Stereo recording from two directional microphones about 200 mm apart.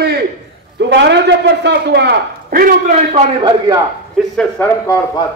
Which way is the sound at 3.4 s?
20° right (ahead or behind).